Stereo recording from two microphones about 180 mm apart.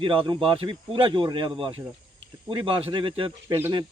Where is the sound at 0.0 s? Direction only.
30° right (ahead or behind).